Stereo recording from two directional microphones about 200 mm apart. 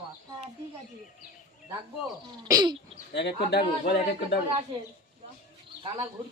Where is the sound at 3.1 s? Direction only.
60° left (ahead or behind).